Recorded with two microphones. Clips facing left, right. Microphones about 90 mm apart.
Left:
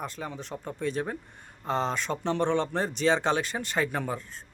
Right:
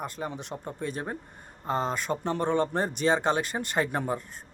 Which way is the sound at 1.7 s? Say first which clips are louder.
Even; 5° right (ahead or behind).